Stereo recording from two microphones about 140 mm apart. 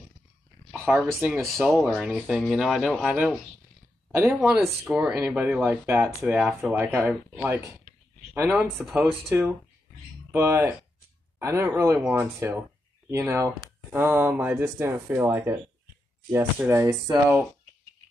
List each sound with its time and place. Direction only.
0.8 s speech: 15° right (ahead or behind)
1.4 s speech: centre (ahead or behind)
1.8 s speech: 10° right (ahead or behind)
2.1 s speech: centre (ahead or behind)
4.1 s speech: 20° right (ahead or behind)
4.4 s speech: 5° right (ahead or behind)
6.0 s speech: 5° right (ahead or behind)
6.6 s speech: 15° right (ahead or behind)